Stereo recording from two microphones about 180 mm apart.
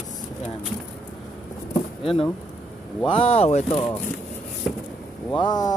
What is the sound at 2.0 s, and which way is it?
Speech, 30° left (ahead or behind).